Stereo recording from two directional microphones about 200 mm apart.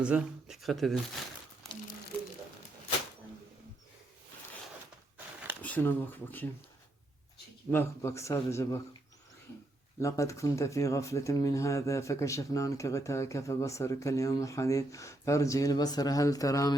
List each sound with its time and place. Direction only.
0.0 s speech: 5° right (ahead or behind)
5.6 s speech: 10° left (ahead or behind)
7.7 s speech: 10° left (ahead or behind)
10.0 s speech: 15° left (ahead or behind)